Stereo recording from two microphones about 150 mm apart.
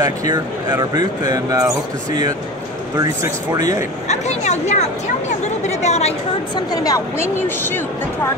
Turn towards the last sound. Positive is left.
turn(degrees=15)  # may be behind; listen again after turning